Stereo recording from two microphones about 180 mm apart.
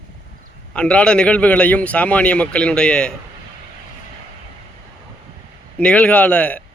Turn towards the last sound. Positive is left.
turn(degrees=5)  # may be behind; listen again after turning